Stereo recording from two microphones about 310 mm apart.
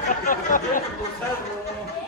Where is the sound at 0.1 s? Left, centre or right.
Left.